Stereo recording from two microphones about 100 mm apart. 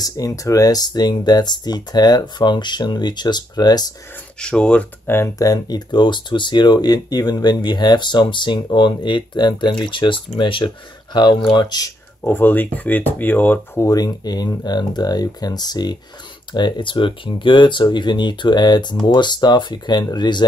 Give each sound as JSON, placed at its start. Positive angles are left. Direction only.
{"t": 0.0, "sound": "speech", "side_deg": 35}
{"t": 4.4, "sound": "speech", "side_deg": 10}
{"t": 5.0, "sound": "speech", "side_deg": 25}
{"t": 5.5, "sound": "speech", "side_deg": 40}
{"t": 12.2, "sound": "speech", "side_deg": 20}
{"t": 13.8, "sound": "speech", "side_deg": 40}